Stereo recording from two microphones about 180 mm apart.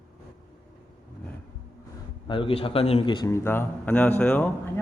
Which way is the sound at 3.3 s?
10° left (ahead or behind).